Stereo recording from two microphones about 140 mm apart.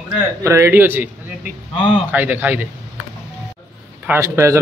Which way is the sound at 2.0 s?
10° right (ahead or behind).